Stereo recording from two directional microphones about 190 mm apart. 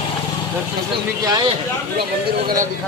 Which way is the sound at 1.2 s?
20° right (ahead or behind).